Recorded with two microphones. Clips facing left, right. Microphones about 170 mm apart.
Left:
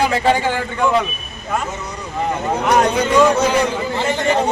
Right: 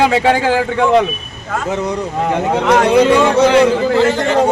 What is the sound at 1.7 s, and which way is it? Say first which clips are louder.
Speech: right 9 dB; 65° right (ahead or behind).